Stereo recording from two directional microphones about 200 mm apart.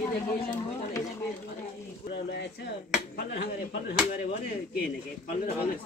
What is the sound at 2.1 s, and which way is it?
Speech, 55° left (ahead or behind).